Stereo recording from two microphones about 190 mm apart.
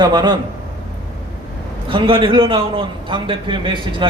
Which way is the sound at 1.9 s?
25° right (ahead or behind).